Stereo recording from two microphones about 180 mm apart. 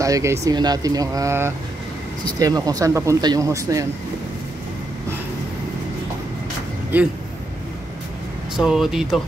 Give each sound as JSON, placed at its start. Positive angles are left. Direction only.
{"t": 0.0, "sound": "speech", "side_deg": -15}
{"t": 6.9, "sound": "speech", "side_deg": -10}
{"t": 8.5, "sound": "speech", "side_deg": -5}